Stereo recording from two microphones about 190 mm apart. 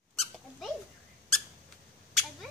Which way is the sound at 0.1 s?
Centre (ahead or behind).